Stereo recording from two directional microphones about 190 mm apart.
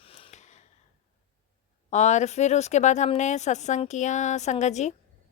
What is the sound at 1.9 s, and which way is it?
Speech, 40° left (ahead or behind).